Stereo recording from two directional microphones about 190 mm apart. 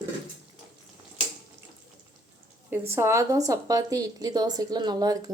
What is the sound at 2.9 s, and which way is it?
A woman's voice, 15° right (ahead or behind).